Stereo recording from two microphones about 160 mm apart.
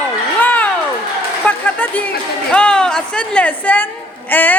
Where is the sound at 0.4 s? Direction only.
10° left (ahead or behind).